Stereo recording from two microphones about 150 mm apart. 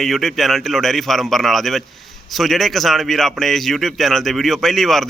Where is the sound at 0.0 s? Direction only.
Centre (ahead or behind).